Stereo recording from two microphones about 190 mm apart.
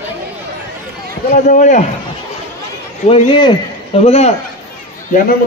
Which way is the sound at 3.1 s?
25° left (ahead or behind).